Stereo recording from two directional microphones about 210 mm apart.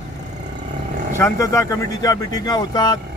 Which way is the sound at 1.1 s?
15° left (ahead or behind).